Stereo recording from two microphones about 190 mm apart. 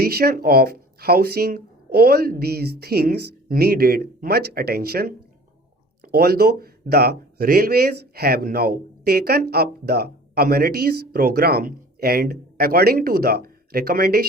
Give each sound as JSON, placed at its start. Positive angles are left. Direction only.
{"t": 0.0, "sound": "speech", "side_deg": -55}